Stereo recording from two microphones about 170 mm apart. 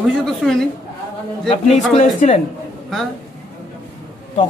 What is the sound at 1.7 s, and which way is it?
Speech, 40° left (ahead or behind).